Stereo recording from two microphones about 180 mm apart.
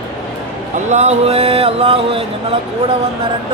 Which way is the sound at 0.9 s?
40° right (ahead or behind).